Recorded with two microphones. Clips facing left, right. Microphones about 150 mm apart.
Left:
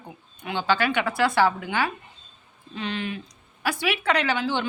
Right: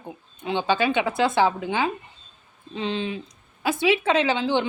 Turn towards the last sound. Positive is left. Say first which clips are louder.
# right 3 dB
turn(degrees=-20)  # may be behind; listen again after turning